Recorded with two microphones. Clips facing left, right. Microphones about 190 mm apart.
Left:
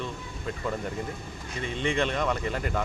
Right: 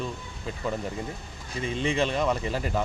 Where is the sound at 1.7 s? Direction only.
30° right (ahead or behind).